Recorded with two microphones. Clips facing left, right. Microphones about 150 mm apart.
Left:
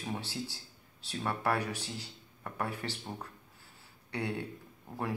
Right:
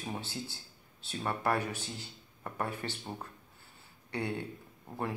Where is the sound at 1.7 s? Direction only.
35° left (ahead or behind).